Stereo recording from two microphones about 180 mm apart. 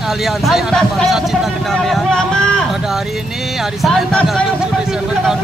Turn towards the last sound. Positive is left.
turn(degrees=0)  # may be behind; listen again after turning